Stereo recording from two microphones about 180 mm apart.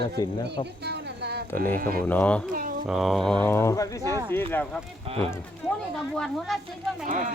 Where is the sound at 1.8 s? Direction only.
55° right (ahead or behind).